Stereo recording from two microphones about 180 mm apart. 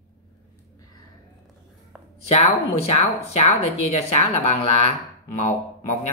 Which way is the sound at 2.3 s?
35° left (ahead or behind).